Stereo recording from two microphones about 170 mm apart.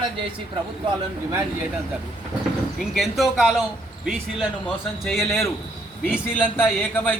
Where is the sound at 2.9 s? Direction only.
Centre (ahead or behind).